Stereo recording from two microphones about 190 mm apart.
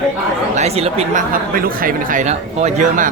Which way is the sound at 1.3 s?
50° right (ahead or behind).